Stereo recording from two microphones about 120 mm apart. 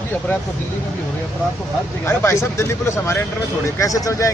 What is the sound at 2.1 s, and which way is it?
Speech, 20° left (ahead or behind).